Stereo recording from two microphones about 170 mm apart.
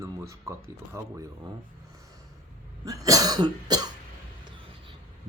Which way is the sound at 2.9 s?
20° right (ahead or behind).